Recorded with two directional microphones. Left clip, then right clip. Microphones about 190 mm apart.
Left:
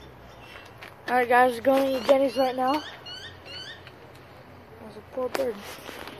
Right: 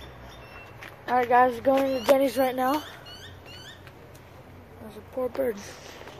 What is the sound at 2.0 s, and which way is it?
Speech, 15° right (ahead or behind).